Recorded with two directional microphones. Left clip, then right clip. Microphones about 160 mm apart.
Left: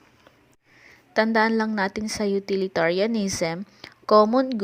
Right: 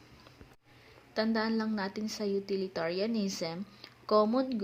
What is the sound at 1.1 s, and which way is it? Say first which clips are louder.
Speech: left 11 dB; 50° left (ahead or behind).